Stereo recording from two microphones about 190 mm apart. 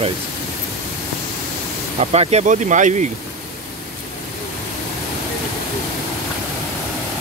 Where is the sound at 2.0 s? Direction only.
35° right (ahead or behind).